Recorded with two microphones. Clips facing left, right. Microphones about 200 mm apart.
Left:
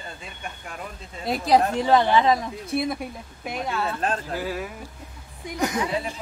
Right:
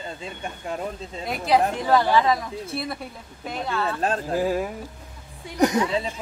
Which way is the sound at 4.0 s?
45° right (ahead or behind).